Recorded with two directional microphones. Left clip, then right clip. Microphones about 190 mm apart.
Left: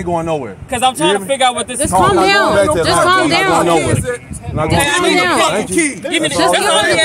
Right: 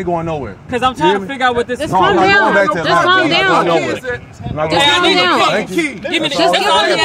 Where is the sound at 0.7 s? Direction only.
40° left (ahead or behind).